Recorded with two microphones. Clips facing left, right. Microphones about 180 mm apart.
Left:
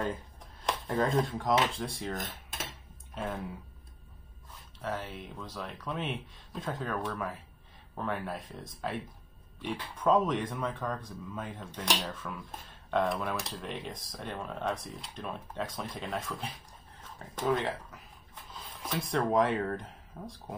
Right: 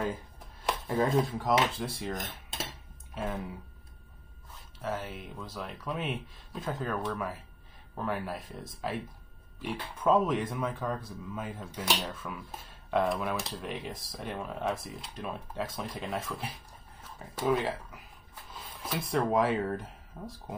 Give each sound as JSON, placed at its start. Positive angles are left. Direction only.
{"t": 0.0, "sound": "speech", "side_deg": -5}
{"t": 4.8, "sound": "speech", "side_deg": 0}